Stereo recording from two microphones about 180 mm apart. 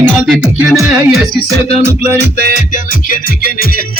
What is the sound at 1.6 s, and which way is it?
Music, 35° left (ahead or behind).